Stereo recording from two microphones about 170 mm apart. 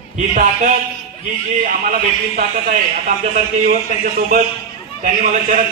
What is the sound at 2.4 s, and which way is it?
Speech, 50° right (ahead or behind).